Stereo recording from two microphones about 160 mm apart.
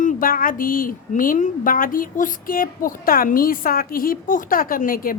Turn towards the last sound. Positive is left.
turn(degrees=65)  # may be behind; listen again after turning